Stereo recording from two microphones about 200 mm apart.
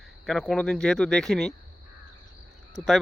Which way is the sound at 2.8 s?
Centre (ahead or behind).